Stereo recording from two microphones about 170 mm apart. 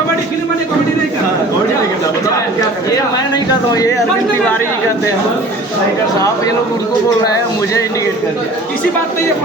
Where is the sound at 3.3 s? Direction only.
25° left (ahead or behind).